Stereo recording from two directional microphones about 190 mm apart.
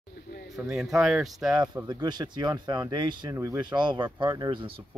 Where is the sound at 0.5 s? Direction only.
5° right (ahead or behind).